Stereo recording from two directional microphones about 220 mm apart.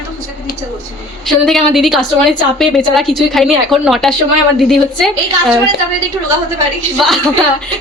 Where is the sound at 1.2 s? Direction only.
Centre (ahead or behind).